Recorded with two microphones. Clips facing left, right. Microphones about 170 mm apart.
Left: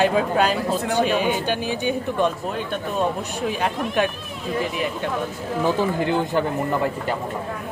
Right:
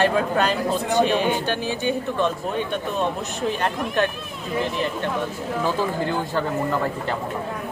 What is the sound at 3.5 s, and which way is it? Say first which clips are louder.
Speech: even; 10° left (ahead or behind).